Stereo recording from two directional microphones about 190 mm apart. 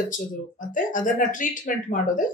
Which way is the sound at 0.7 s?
45° left (ahead or behind).